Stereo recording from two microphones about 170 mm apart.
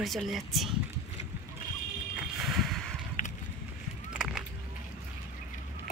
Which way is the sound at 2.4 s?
Centre (ahead or behind).